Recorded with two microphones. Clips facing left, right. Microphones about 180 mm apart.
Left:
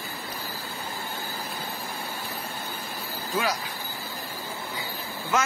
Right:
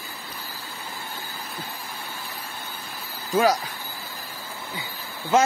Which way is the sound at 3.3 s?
40° right (ahead or behind).